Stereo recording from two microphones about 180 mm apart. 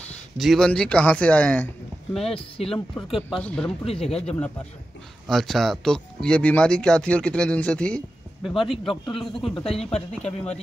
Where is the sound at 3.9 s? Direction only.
35° left (ahead or behind).